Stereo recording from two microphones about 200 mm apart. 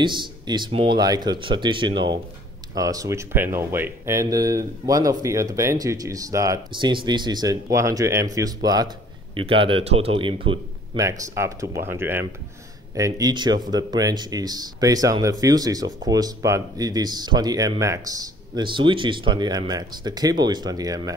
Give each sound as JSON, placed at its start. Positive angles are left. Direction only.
{"t": 0.0, "sound": "speech", "side_deg": -25}